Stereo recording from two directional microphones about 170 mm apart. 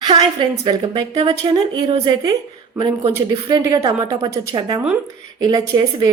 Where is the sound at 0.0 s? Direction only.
25° right (ahead or behind).